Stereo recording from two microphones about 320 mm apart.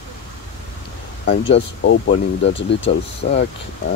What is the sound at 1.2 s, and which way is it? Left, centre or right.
Speech, left.